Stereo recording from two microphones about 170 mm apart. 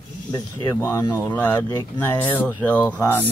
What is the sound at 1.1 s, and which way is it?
Speech, 15° left (ahead or behind).